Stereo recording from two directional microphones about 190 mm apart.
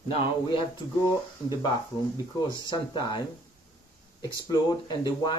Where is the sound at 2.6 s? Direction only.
20° left (ahead or behind).